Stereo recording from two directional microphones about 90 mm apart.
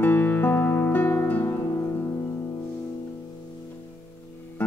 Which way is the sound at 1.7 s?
30° left (ahead or behind).